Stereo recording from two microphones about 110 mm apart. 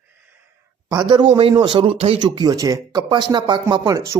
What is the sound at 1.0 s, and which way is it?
A man's voice, 50° right (ahead or behind).